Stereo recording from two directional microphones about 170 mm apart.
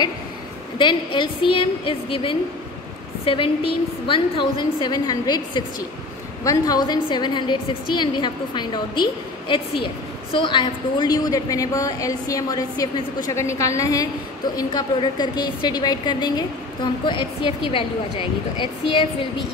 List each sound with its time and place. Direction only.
0.7 s a woman's voice: 30° left (ahead or behind)